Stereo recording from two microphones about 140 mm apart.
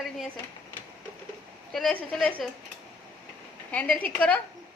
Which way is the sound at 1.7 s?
5° left (ahead or behind).